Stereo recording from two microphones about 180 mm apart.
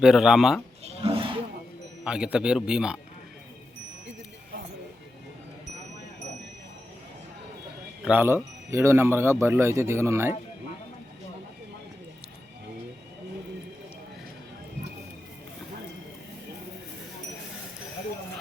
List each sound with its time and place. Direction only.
0.0 s a man's voice: 5° right (ahead or behind)
1.0 s a sound: 30° right (ahead or behind)
2.0 s a man's voice: 5° right (ahead or behind)
8.0 s a man's voice: 10° right (ahead or behind)